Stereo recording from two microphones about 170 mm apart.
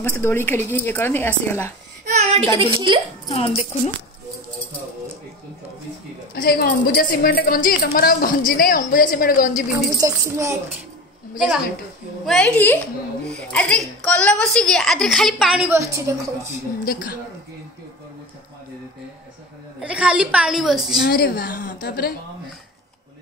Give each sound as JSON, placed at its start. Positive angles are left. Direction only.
{"t": 0.1, "sound": "a woman's voice", "side_deg": 15}
{"t": 2.0, "sound": "a woman's voice", "side_deg": -40}
{"t": 3.3, "sound": "speech", "side_deg": 35}
{"t": 6.3, "sound": "a woman's voice", "side_deg": 65}
{"t": 9.9, "sound": "a woman's voice", "side_deg": -20}
{"t": 12.3, "sound": "a woman's voice", "side_deg": 5}
{"t": 15.8, "sound": "a woman's voice", "side_deg": -20}
{"t": 19.8, "sound": "a woman's voice", "side_deg": -5}
{"t": 21.0, "sound": "a woman's voice", "side_deg": 60}